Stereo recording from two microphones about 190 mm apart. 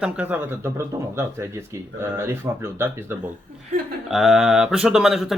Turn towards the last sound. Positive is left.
turn(degrees=0)  # may be behind; listen again after turning